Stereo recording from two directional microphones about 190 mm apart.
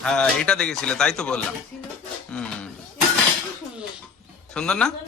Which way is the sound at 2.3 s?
5° left (ahead or behind).